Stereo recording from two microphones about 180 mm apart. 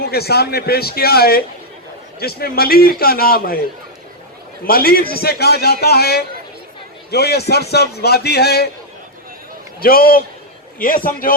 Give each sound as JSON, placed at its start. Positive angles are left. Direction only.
{"t": 0.0, "sound": "a man's voice", "side_deg": 60}
{"t": 4.6, "sound": "a man's voice", "side_deg": 55}
{"t": 9.8, "sound": "a man's voice", "side_deg": 55}